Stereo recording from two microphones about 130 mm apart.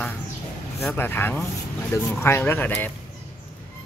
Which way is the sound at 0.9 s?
15° left (ahead or behind).